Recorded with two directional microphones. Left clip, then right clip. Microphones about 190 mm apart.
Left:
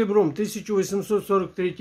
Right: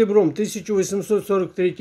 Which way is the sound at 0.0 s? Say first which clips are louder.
Right 4 dB; 15° right (ahead or behind).